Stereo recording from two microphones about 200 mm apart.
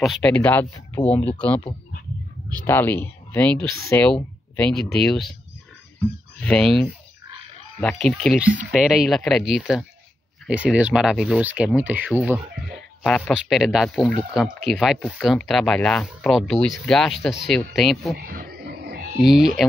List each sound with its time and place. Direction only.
0.0 s speech: centre (ahead or behind)
2.6 s speech: 10° left (ahead or behind)
6.4 s speech: 5° left (ahead or behind)
18.1 s wild animals: 45° right (ahead or behind)
19.2 s speech: centre (ahead or behind)